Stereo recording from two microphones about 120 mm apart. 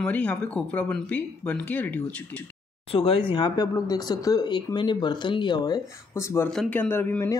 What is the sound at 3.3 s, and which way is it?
Speech, 35° left (ahead or behind).